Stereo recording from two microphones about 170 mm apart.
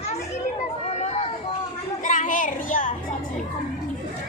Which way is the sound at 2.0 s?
50° left (ahead or behind).